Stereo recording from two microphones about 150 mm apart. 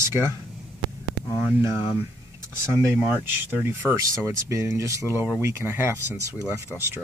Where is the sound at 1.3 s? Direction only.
15° right (ahead or behind).